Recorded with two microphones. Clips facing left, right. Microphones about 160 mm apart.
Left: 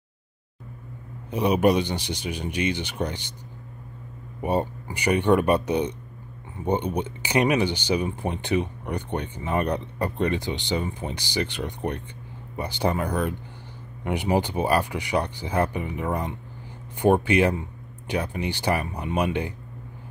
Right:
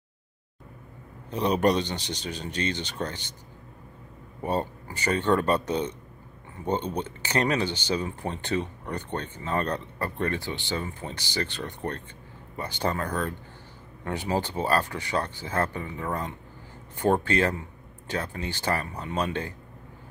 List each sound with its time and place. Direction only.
1.3 s speech: 10° left (ahead or behind)
4.4 s speech: 10° left (ahead or behind)